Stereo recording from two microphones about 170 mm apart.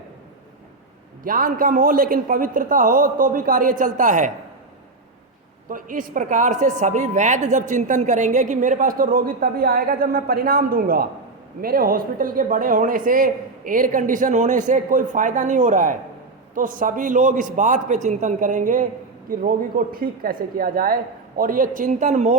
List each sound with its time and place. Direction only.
1.2 s a man's voice: 55° right (ahead or behind)
5.6 s a man's voice: 50° right (ahead or behind)